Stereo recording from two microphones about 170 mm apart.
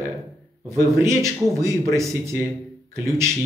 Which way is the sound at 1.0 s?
15° right (ahead or behind).